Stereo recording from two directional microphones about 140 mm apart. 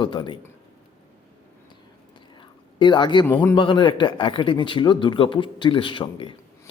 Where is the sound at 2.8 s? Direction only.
35° left (ahead or behind).